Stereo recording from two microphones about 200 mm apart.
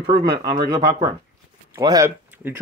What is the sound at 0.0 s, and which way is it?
Speech, 25° right (ahead or behind).